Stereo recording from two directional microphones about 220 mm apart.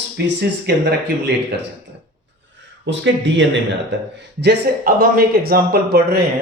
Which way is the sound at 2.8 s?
55° right (ahead or behind).